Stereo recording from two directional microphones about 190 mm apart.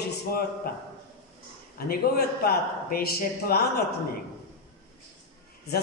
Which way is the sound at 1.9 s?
55° left (ahead or behind).